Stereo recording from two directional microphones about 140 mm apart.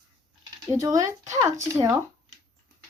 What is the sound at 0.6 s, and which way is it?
Speech, 25° right (ahead or behind).